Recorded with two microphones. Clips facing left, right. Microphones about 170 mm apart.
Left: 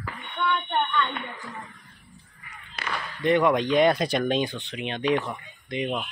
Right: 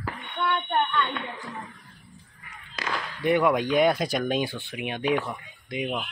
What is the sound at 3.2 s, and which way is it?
Speech, 5° right (ahead or behind).